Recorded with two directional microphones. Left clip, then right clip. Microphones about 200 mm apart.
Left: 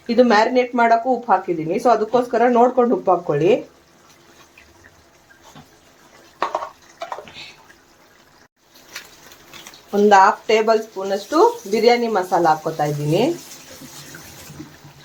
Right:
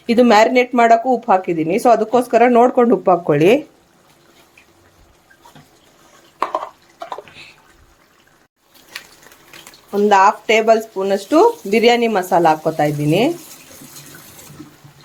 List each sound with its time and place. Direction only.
0.1 s speech: 35° right (ahead or behind)
9.9 s speech: 15° right (ahead or behind)
10.9 s speech: 35° right (ahead or behind)